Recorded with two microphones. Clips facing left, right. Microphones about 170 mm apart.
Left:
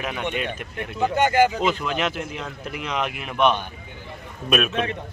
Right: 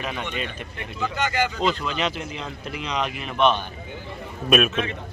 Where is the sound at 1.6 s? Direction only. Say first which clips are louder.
Left 1 dB; 10° left (ahead or behind).